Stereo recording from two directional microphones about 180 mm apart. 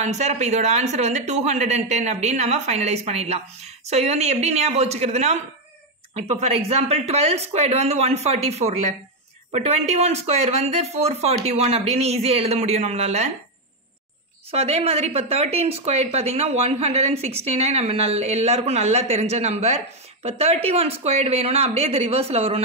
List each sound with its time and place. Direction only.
0.0 s speech: 40° right (ahead or behind)
14.5 s speech: 35° right (ahead or behind)